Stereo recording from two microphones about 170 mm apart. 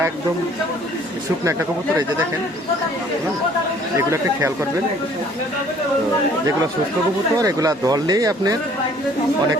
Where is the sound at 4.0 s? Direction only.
15° right (ahead or behind).